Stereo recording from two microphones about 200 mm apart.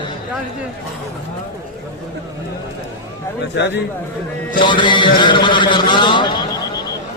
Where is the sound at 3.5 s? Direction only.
60° left (ahead or behind).